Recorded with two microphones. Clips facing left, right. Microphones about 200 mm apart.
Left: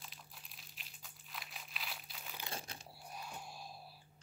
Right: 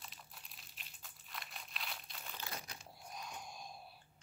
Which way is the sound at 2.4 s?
30° left (ahead or behind).